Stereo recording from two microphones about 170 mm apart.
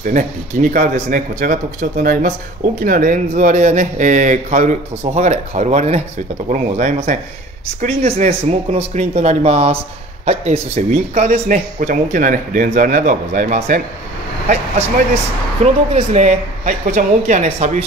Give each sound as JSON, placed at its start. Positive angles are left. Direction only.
{"t": 0.0, "sound": "speech", "side_deg": -50}
{"t": 15.6, "sound": "speech", "side_deg": -40}